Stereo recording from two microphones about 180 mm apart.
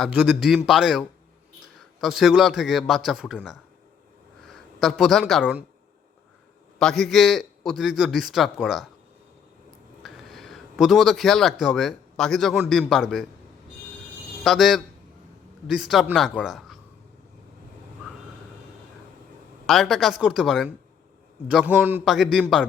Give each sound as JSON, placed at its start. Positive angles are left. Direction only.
{"t": 0.0, "sound": "a man's voice", "side_deg": -5}
{"t": 6.7, "sound": "a man's voice", "side_deg": 0}
{"t": 10.0, "sound": "a sound", "side_deg": 0}
{"t": 11.6, "sound": "a man's voice", "side_deg": 0}
{"t": 14.4, "sound": "a man's voice", "side_deg": 0}
{"t": 19.6, "sound": "a man's voice", "side_deg": 0}